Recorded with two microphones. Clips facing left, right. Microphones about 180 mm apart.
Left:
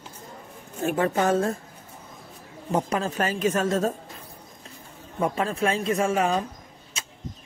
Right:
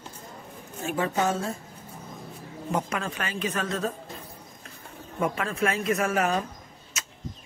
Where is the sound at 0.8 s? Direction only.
55° left (ahead or behind).